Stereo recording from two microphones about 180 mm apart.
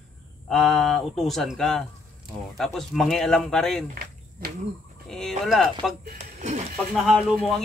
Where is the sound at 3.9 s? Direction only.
55° right (ahead or behind).